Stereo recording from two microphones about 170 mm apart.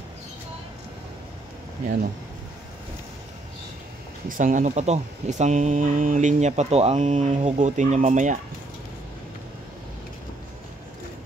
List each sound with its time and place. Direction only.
4.3 s speech: 50° right (ahead or behind)